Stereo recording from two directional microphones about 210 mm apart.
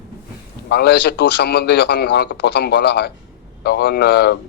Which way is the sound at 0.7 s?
50° left (ahead or behind).